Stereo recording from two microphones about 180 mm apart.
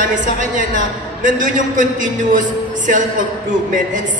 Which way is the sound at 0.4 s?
45° right (ahead or behind).